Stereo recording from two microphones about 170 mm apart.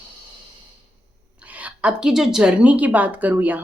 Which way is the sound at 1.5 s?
10° right (ahead or behind).